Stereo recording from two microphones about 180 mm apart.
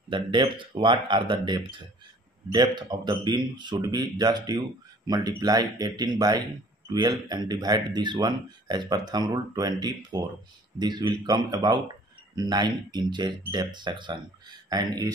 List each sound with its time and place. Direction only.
0.1 s speech: 25° right (ahead or behind)